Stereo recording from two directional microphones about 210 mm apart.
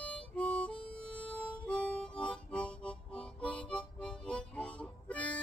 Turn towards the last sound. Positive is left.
turn(degrees=5)  # may be behind; listen again after turning